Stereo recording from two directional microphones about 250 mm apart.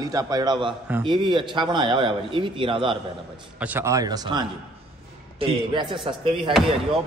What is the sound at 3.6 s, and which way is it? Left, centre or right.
A man's voice, centre.